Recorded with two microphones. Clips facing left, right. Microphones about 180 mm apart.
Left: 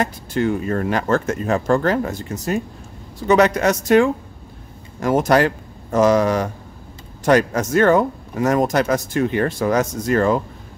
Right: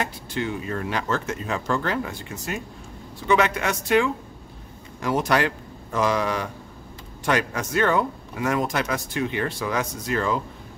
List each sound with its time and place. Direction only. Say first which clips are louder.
0.0 s a man's voice: left 7 dB; 45° left (ahead or behind)